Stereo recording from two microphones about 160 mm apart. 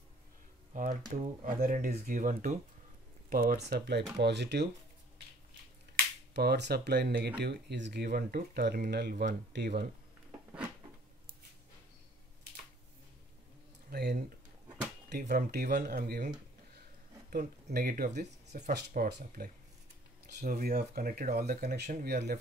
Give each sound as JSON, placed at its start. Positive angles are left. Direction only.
{"t": 1.4, "sound": "speech", "side_deg": -55}
{"t": 6.3, "sound": "speech", "side_deg": -90}
{"t": 13.8, "sound": "a sound", "side_deg": -90}
{"t": 15.0, "sound": "speech", "side_deg": -80}
{"t": 17.3, "sound": "speech", "side_deg": -60}
{"t": 20.3, "sound": "speech", "side_deg": -65}
{"t": 22.0, "sound": "speech", "side_deg": -85}